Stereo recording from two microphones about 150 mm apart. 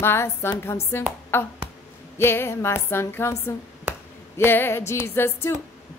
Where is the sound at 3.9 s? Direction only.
10° right (ahead or behind).